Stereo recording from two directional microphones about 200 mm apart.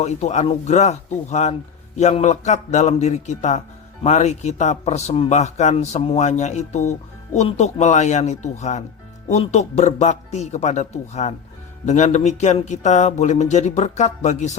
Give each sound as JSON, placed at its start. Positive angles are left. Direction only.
{"t": 0.0, "sound": "speech", "side_deg": 35}